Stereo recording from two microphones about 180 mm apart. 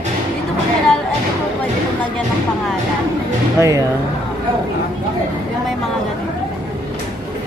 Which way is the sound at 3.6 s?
15° right (ahead or behind).